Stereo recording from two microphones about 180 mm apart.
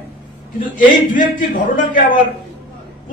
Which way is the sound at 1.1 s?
50° left (ahead or behind).